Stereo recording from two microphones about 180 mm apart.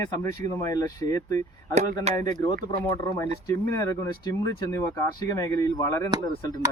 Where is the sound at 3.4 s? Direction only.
20° left (ahead or behind).